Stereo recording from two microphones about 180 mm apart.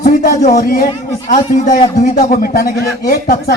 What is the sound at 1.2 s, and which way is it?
A man's voice, 45° left (ahead or behind).